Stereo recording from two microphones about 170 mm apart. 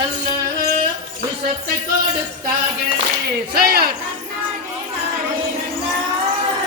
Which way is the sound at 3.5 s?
60° right (ahead or behind).